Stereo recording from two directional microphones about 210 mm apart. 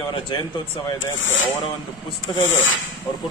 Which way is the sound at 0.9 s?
65° left (ahead or behind).